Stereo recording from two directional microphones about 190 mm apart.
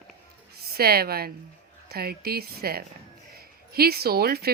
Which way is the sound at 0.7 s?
55° right (ahead or behind).